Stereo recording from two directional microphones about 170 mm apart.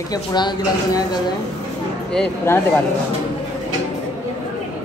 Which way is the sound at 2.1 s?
10° left (ahead or behind).